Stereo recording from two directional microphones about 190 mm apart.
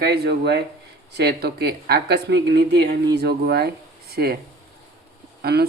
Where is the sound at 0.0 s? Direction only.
60° right (ahead or behind).